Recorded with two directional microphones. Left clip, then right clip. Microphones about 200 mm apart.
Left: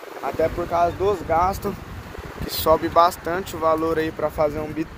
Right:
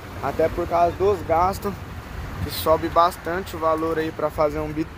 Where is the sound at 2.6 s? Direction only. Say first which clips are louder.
Left 2 dB; 5° left (ahead or behind).